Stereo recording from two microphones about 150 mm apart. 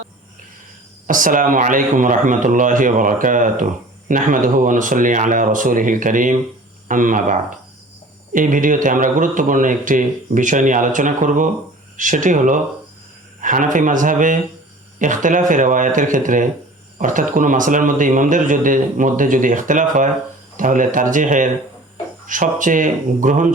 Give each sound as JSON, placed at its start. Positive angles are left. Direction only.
{"t": 1.0, "sound": "speech", "side_deg": -60}